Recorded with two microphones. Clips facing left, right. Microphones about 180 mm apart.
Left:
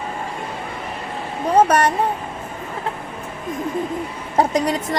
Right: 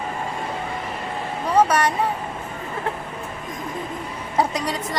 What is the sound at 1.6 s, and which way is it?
Speech, 45° left (ahead or behind).